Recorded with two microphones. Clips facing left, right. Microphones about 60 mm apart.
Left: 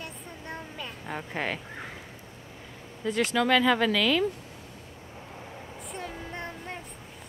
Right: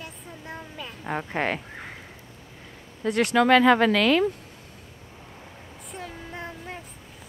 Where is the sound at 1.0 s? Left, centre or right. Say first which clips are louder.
Right 6 dB; right.